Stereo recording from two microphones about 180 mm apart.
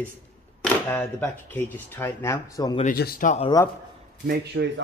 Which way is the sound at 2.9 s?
55° left (ahead or behind).